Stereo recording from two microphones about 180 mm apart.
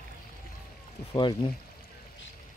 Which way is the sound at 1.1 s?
25° left (ahead or behind).